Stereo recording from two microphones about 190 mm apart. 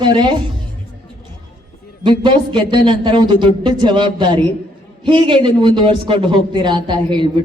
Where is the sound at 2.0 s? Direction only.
25° right (ahead or behind).